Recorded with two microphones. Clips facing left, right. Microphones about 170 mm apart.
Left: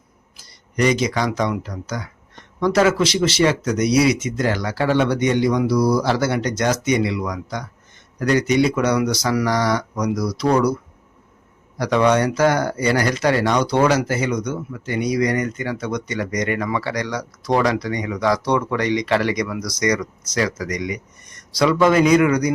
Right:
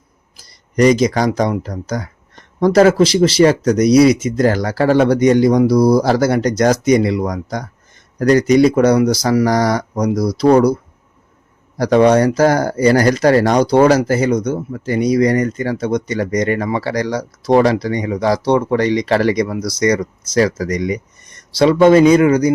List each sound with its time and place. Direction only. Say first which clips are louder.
0.3 s speech: right 7 dB; 40° right (ahead or behind)
11.8 s speech: right 6 dB; 35° right (ahead or behind)